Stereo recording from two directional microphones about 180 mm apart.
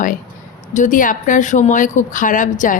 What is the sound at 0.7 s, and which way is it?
A woman's voice, 45° left (ahead or behind).